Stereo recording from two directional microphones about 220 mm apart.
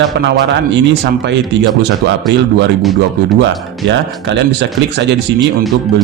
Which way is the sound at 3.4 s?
55° right (ahead or behind).